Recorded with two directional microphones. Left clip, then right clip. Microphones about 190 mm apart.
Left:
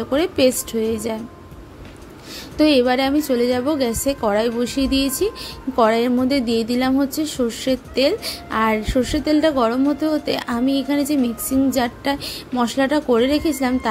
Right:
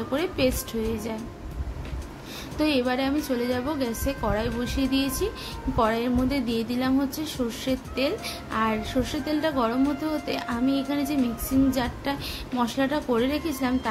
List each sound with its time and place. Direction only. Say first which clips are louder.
0.1 s speech: left 8 dB; 35° left (ahead or behind)
2.5 s speech: left 9 dB; 35° left (ahead or behind)